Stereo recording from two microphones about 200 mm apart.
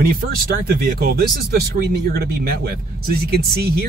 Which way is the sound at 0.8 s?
50° right (ahead or behind).